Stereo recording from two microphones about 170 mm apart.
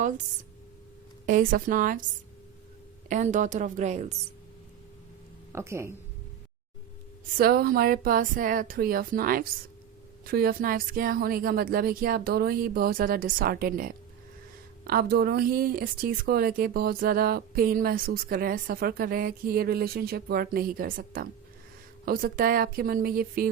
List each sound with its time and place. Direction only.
1.3 s a woman's voice: 50° right (ahead or behind)
3.1 s a woman's voice: 45° right (ahead or behind)
5.5 s a woman's voice: 15° right (ahead or behind)
7.3 s speech: 60° right (ahead or behind)